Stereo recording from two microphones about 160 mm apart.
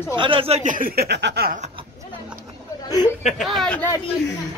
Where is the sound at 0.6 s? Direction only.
60° right (ahead or behind); by 1.6 s 85° right.